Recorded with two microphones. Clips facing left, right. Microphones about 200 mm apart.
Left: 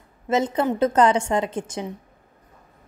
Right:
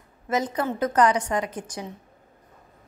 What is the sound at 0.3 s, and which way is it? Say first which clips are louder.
A woman's voice: left 4 dB; 25° left (ahead or behind).